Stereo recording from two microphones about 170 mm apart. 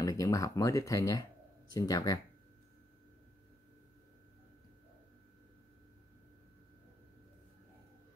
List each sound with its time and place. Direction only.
0.0 s speech: 20° left (ahead or behind)